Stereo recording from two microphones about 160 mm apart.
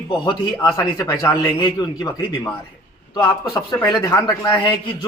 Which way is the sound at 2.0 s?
25° left (ahead or behind).